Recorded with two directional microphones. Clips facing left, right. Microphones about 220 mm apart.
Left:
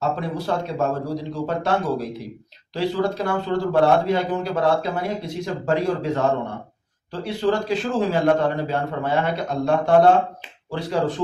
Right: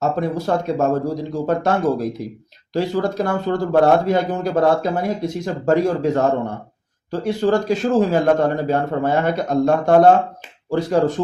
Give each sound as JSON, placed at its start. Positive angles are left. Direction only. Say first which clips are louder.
{"t": 0.0, "sound": "a man's voice", "louder": "right 4 dB", "side_deg": -45}